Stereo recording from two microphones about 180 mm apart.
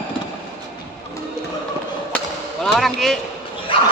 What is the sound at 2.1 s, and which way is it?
Chop, 5° left (ahead or behind).